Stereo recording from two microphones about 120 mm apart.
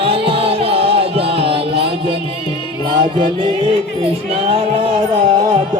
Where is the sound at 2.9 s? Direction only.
40° right (ahead or behind).